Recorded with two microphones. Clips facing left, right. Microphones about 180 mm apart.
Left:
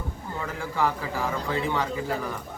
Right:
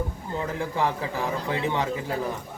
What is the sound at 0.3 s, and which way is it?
A man's voice, 20° right (ahead or behind).